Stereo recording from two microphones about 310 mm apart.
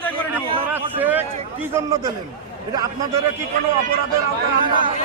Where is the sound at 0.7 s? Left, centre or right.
Centre.